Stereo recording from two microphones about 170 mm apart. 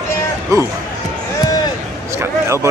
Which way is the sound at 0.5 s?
20° right (ahead or behind).